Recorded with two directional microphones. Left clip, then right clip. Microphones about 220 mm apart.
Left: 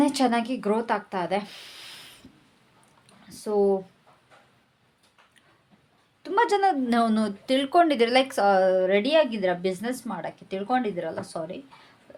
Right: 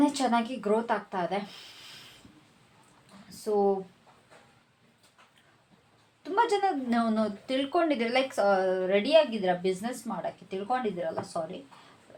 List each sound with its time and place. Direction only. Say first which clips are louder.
0.0 s speech: left 3 dB; 50° left (ahead or behind)
3.2 s speech: left 3 dB; 50° left (ahead or behind)
6.2 s speech: left 4 dB; 50° left (ahead or behind)